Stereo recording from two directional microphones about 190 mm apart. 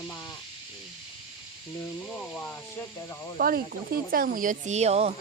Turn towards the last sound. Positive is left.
turn(degrees=-35)  # may be behind; listen again after turning